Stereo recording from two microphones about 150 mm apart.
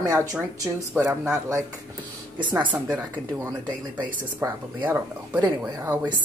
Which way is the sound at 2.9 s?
10° right (ahead or behind).